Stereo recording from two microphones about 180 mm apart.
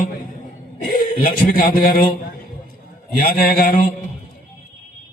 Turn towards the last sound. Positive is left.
turn(degrees=55)  # may be behind; listen again after turning